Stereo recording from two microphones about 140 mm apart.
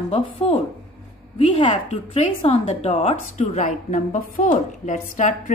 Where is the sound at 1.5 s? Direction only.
35° left (ahead or behind).